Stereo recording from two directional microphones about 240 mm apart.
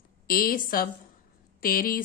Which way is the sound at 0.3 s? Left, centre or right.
Left.